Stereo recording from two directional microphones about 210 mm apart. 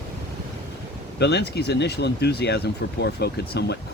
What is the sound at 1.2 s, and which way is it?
Speech, 55° left (ahead or behind).